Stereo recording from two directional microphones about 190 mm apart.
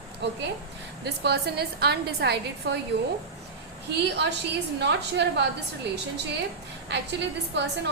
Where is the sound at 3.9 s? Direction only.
65° right (ahead or behind).